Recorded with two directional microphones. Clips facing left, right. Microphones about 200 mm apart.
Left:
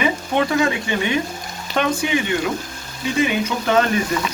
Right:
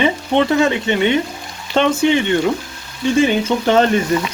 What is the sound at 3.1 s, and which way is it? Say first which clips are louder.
Speech: right 5 dB; 30° right (ahead or behind).